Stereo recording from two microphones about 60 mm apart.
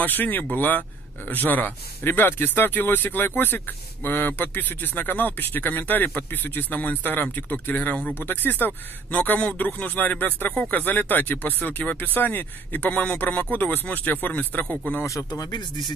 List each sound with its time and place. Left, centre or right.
0.0 s speech: left
15.0 s speech: left